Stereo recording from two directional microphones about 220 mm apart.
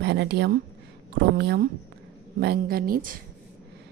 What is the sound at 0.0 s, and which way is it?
A woman's voice, 50° right (ahead or behind).